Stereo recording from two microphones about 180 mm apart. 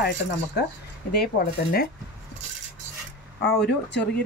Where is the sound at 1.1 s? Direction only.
60° left (ahead or behind).